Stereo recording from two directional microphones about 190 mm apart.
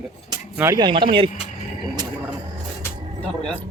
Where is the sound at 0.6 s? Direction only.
20° right (ahead or behind).